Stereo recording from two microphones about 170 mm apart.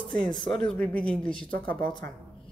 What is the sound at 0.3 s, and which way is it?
Speech, 25° left (ahead or behind).